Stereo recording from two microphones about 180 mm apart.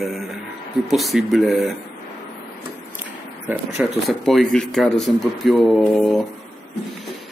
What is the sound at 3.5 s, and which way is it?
Speech, 10° right (ahead or behind).